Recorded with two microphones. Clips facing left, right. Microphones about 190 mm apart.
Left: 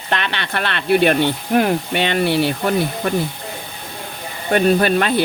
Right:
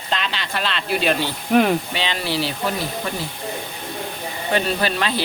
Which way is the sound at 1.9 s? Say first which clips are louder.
Left 7 dB; 55° left (ahead or behind).